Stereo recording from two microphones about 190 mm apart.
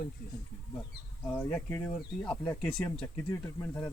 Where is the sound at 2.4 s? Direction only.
15° left (ahead or behind).